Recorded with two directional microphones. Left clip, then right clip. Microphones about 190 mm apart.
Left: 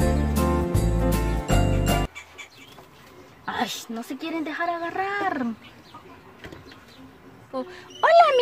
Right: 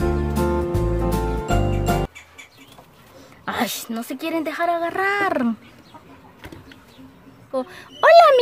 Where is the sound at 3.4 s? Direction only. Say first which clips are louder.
Right 3 dB; 45° right (ahead or behind).